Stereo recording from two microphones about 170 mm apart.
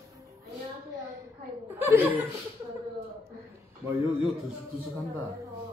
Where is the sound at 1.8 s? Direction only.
10° right (ahead or behind).